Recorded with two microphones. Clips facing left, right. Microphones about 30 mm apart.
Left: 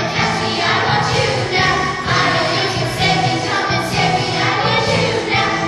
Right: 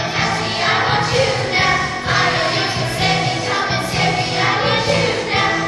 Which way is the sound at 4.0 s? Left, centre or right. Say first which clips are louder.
Even; centre.